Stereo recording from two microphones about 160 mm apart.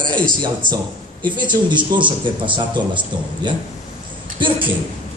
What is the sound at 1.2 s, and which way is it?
Speech, 30° right (ahead or behind).